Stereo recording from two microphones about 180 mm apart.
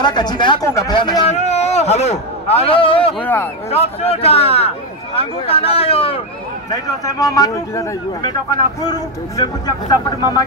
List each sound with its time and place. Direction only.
0.0 s speech: 25° left (ahead or behind)
1.3 s a man's voice: 35° left (ahead or behind)
6.7 s speech: 20° left (ahead or behind)